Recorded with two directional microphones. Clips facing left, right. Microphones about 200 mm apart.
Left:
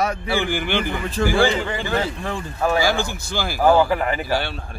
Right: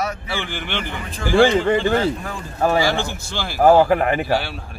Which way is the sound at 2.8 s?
5° left (ahead or behind).